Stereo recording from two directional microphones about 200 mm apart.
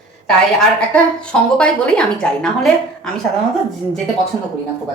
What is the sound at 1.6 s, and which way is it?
A woman's voice, 5° left (ahead or behind).